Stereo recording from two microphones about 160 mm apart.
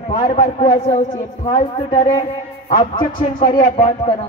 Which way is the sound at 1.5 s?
40° left (ahead or behind).